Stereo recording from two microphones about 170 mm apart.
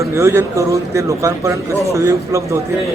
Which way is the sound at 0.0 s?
15° right (ahead or behind).